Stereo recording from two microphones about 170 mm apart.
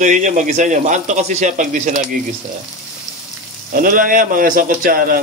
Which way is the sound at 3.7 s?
55° right (ahead or behind).